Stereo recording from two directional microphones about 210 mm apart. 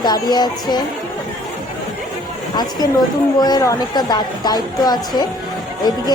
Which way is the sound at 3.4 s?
20° left (ahead or behind).